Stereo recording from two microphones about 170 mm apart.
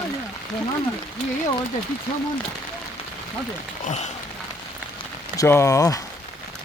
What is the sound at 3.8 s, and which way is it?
Speech, 45° left (ahead or behind).